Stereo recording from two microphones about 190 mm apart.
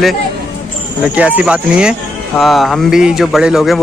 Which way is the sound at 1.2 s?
5° right (ahead or behind).